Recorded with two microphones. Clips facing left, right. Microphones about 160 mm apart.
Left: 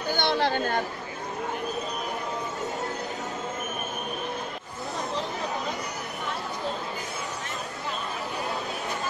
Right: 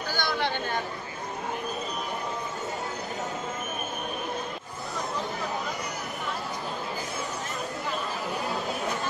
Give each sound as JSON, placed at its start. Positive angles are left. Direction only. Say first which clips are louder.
{"t": 0.1, "sound": "speech", "louder": "left 5 dB", "side_deg": 25}
{"t": 0.4, "sound": "speech", "louder": "left 4 dB", "side_deg": 40}